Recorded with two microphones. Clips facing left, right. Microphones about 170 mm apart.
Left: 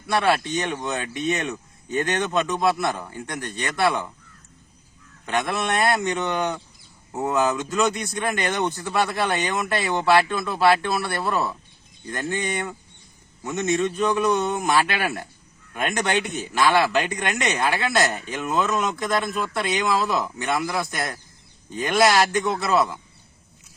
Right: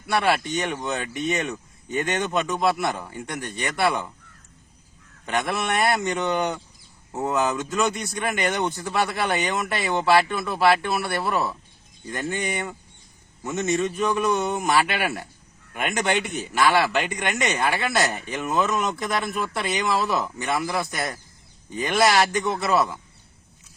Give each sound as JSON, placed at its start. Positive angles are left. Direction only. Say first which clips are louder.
{"t": 0.1, "sound": "speech", "louder": "left 1 dB", "side_deg": -10}
{"t": 3.1, "sound": "speech", "louder": "even", "side_deg": -15}
{"t": 5.2, "sound": "speech", "louder": "left 1 dB", "side_deg": -10}
{"t": 7.9, "sound": "a man's voice", "louder": "left 1 dB", "side_deg": -10}